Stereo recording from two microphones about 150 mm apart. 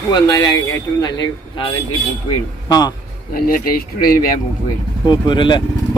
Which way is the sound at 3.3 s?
80° left.